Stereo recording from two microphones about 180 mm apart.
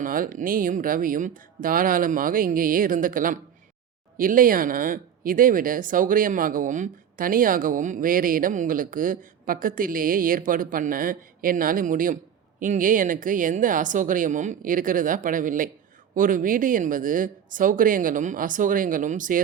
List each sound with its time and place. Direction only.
0.0 s speech: 50° right (ahead or behind)